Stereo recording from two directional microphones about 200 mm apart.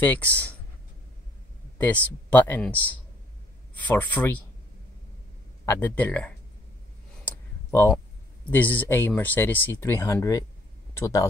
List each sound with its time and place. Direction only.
0.0 s speech: 10° left (ahead or behind)
1.8 s speech: 10° left (ahead or behind)
5.7 s speech: 10° left (ahead or behind)
7.2 s clicking: 10° left (ahead or behind)
8.5 s speech: 10° left (ahead or behind)